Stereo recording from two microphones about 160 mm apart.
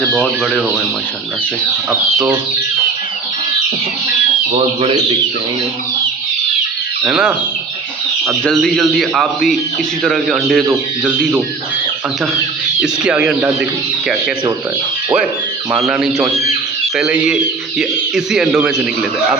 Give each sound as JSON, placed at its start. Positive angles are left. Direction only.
{"t": 1.9, "sound": "speech", "side_deg": -15}
{"t": 4.5, "sound": "a man's voice", "side_deg": -35}
{"t": 7.0, "sound": "a man's voice", "side_deg": -5}
{"t": 10.7, "sound": "speech", "side_deg": -10}
{"t": 12.8, "sound": "speech", "side_deg": -5}
{"t": 15.7, "sound": "a man's voice", "side_deg": -5}